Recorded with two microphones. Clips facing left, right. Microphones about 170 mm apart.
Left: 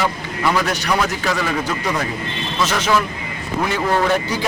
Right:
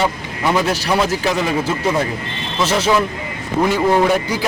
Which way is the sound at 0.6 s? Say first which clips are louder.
Right 2 dB; 25° right (ahead or behind).